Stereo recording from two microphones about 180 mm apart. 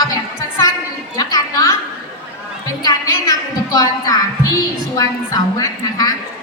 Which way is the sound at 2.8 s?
20° left (ahead or behind).